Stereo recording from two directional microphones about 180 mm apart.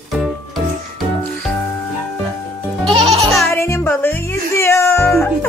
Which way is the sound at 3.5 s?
15° left (ahead or behind).